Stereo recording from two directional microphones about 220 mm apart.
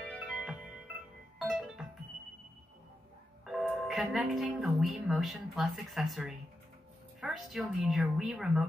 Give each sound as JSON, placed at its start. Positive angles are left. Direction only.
{"t": 0.0, "sound": "music", "side_deg": 0}
{"t": 3.4, "sound": "speech", "side_deg": -5}